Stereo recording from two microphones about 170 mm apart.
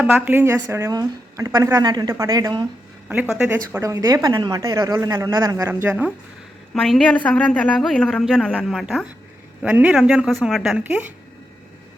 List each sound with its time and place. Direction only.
0.0 s a woman's voice: 10° right (ahead or behind)
3.1 s speech: 5° right (ahead or behind)
6.7 s speech: 5° left (ahead or behind)